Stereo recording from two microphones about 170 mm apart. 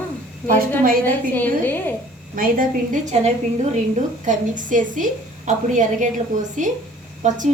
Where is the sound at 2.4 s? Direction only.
50° right (ahead or behind).